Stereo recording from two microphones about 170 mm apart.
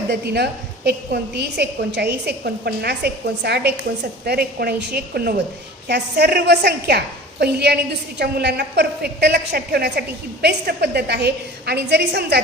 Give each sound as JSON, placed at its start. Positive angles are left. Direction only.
{"t": 0.1, "sound": "a woman's voice", "side_deg": -75}